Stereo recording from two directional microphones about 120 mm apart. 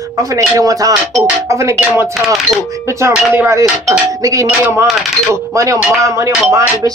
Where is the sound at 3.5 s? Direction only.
25° right (ahead or behind).